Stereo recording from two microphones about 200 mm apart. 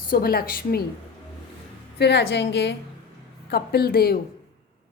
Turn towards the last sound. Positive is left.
turn(degrees=50)  # may be behind; listen again after turning